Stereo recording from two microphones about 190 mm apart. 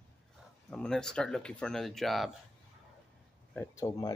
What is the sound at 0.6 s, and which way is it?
Speech, 5° left (ahead or behind).